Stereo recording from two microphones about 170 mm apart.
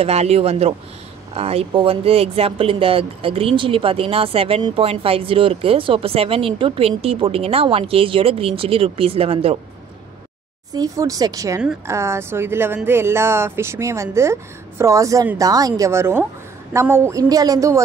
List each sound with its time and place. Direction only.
0.0 s speech: 40° right (ahead or behind)
10.7 s a woman's voice: 20° right (ahead or behind)